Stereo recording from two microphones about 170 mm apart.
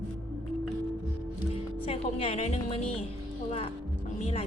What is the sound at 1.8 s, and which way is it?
Speech, 35° left (ahead or behind).